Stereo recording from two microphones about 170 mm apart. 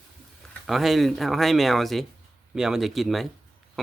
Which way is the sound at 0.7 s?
Centre (ahead or behind).